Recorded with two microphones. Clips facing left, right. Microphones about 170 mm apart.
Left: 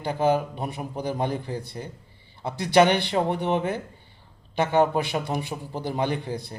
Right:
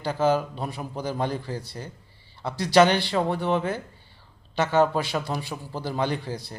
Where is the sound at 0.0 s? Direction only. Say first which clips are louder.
Even; 15° left (ahead or behind).